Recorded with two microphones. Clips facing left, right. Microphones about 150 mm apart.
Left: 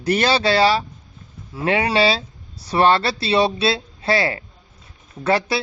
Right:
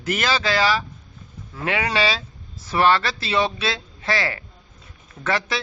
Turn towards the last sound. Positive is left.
turn(degrees=35)  # may be behind; listen again after turning